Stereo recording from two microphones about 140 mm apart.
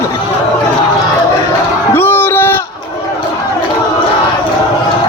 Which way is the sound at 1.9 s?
15° left (ahead or behind).